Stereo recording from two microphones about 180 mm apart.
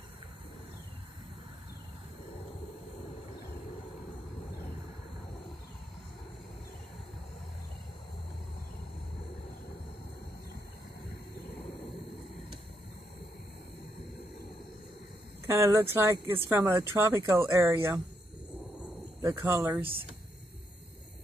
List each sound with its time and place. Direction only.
15.4 s speech: 15° right (ahead or behind)
19.2 s speech: 15° right (ahead or behind)